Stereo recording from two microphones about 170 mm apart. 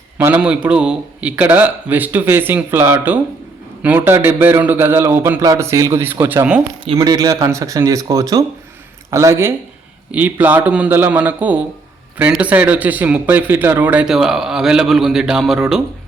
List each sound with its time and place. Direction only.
0.2 s a man's voice: 10° right (ahead or behind)
6.8 s a man's voice: 25° right (ahead or behind); by 15.8 s 5° right (ahead or behind)